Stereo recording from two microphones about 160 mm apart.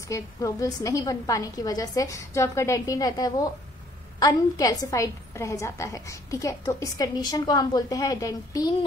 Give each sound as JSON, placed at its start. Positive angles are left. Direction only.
{"t": 0.1, "sound": "a woman's voice", "side_deg": 20}